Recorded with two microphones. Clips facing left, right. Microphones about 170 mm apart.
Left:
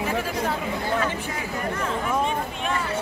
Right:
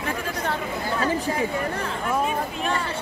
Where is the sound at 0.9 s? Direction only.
35° right (ahead or behind).